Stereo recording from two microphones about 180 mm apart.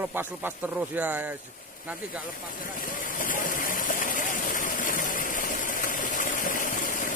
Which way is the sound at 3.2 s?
50° left (ahead or behind).